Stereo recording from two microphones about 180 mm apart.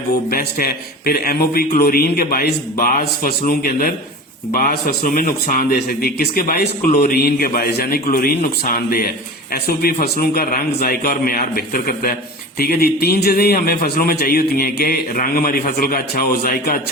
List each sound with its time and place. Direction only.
0.3 s a man's voice: 55° left (ahead or behind)